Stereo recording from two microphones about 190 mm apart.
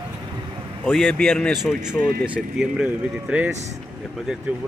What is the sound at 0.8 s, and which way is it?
Speech, 5° left (ahead or behind).